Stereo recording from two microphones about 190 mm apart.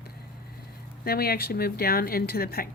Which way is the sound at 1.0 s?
55° left (ahead or behind).